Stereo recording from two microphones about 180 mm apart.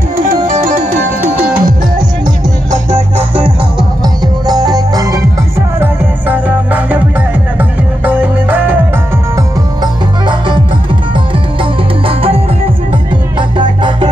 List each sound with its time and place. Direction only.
0.3 s music: 50° right (ahead or behind)
2.7 s music: 15° right (ahead or behind)
4.5 s music: 20° right (ahead or behind)
5.8 s music: 10° right (ahead or behind)
8.0 s music: 10° right (ahead or behind)
12.1 s music: 30° right (ahead or behind)
13.6 s music: 25° right (ahead or behind)